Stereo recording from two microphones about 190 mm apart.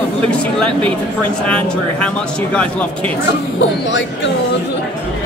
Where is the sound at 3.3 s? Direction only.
70° left (ahead or behind).